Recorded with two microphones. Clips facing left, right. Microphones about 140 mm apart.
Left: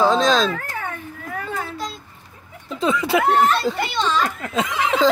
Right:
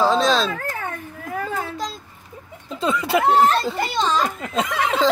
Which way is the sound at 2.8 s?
Centre (ahead or behind).